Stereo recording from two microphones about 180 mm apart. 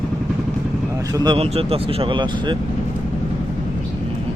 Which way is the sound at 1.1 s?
30° right (ahead or behind).